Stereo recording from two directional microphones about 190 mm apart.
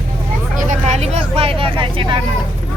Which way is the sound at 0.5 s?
40° right (ahead or behind).